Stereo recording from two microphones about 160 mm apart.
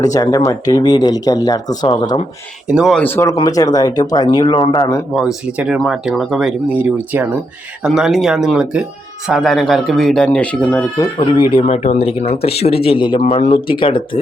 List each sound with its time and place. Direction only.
0.0 s speech: 20° left (ahead or behind)
2.6 s speech: 5° right (ahead or behind)
3.0 s speech: 15° left (ahead or behind)
5.1 s speech: 5° right (ahead or behind)
10.9 s speech: 25° left (ahead or behind)